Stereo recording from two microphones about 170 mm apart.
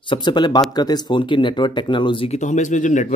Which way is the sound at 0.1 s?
25° left (ahead or behind).